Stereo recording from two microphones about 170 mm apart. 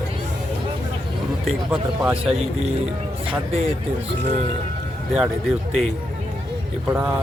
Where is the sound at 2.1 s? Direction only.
35° right (ahead or behind).